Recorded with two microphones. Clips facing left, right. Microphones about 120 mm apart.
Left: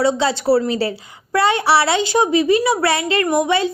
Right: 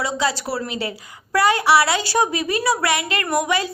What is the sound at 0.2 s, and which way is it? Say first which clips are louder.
Speech: left 7 dB; 25° left (ahead or behind).